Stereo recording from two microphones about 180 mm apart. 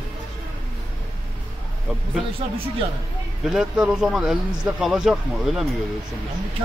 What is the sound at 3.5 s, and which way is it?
A man's voice, 5° right (ahead or behind).